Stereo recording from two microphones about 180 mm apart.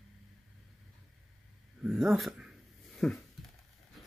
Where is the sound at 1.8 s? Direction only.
5° right (ahead or behind).